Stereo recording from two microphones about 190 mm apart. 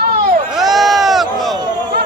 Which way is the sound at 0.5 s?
Centre (ahead or behind).